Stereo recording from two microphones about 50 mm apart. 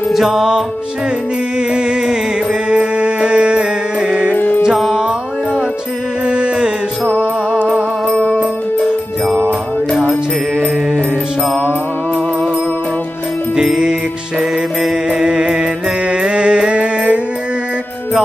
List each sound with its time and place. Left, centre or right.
0.1 s music: centre
1.7 s music: centre
4.4 s music: left
6.2 s music: right
8.1 s music: left
14.4 s music: centre